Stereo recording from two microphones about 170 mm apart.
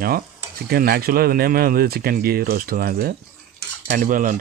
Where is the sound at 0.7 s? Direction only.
65° right (ahead or behind).